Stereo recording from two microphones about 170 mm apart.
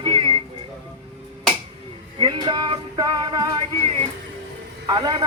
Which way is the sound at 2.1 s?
25° right (ahead or behind).